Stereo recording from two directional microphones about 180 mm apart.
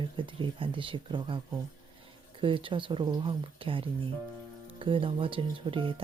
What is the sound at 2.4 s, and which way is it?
Speech, 30° right (ahead or behind).